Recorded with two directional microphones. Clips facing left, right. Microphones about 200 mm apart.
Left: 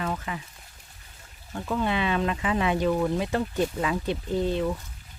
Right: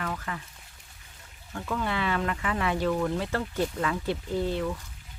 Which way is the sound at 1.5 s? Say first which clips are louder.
Left 3 dB; 20° left (ahead or behind).